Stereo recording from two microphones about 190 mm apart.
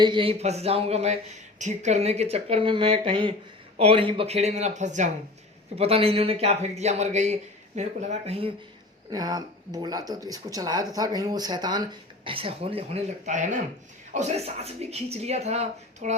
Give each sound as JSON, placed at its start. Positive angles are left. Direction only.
{"t": 0.0, "sound": "speech", "side_deg": -25}
{"t": 9.0, "sound": "speech", "side_deg": -20}